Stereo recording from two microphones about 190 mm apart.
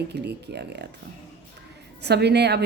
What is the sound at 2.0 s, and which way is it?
Speech, 60° right (ahead or behind).